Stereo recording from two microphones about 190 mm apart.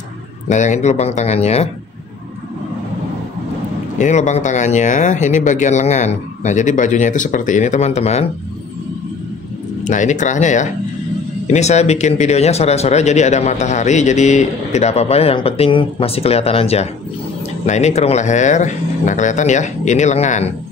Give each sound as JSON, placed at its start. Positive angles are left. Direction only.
{"t": 0.5, "sound": "speech", "side_deg": 40}
{"t": 4.0, "sound": "speech", "side_deg": 40}
{"t": 9.8, "sound": "speech", "side_deg": 40}